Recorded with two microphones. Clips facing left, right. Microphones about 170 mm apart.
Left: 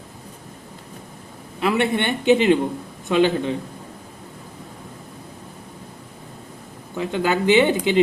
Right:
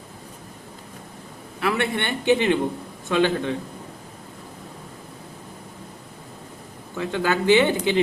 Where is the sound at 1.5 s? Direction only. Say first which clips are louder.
Left 4 dB; 20° left (ahead or behind).